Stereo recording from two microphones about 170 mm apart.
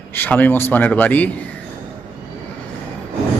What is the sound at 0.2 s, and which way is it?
Speech, 10° left (ahead or behind).